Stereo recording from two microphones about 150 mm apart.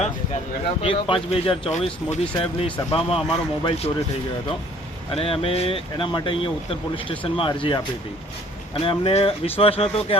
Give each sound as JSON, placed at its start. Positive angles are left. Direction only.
{"t": 0.8, "sound": "speech", "side_deg": 35}
{"t": 5.1, "sound": "speech", "side_deg": 40}